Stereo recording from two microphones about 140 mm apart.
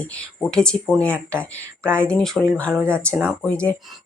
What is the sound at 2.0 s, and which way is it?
Speech, 5° left (ahead or behind).